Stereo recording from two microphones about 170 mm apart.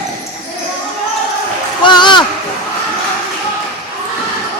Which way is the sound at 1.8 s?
25° left (ahead or behind).